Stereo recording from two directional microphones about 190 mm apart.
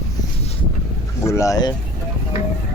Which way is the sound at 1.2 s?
15° left (ahead or behind).